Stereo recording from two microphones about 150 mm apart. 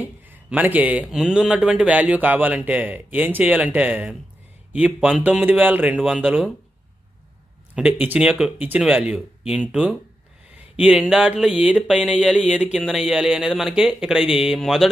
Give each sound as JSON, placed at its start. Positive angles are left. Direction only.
{"t": 0.0, "sound": "speech", "side_deg": -10}
{"t": 7.7, "sound": "speech", "side_deg": -10}